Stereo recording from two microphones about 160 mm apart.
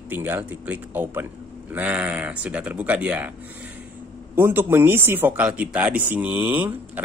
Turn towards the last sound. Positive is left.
turn(degrees=-10)  # may be behind; listen again after turning